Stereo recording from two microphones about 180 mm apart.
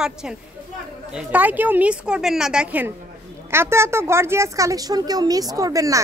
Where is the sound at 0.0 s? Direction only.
5° right (ahead or behind).